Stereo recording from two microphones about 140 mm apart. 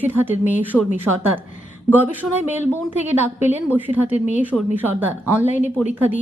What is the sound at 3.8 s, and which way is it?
A woman's voice, 10° right (ahead or behind).